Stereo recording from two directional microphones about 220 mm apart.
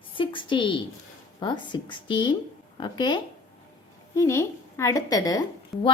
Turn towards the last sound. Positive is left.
turn(degrees=0)  # may be behind; listen again after turning